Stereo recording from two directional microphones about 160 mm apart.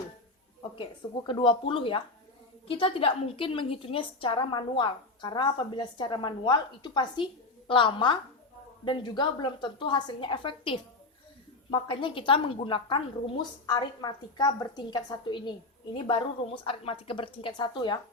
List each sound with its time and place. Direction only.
1.3 s a woman's voice: 30° left (ahead or behind)